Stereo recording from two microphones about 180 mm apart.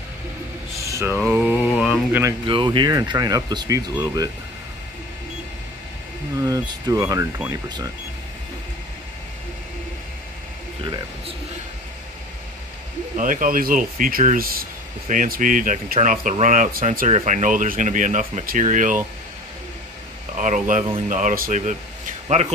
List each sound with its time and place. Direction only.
0.8 s mantra: 15° right (ahead or behind)
1.8 s speech: 5° right (ahead or behind)
2.4 s speech: 25° right (ahead or behind)
6.4 s speech: 20° right (ahead or behind)
13.1 s speech: 45° right (ahead or behind)
20.3 s speech: 45° right (ahead or behind)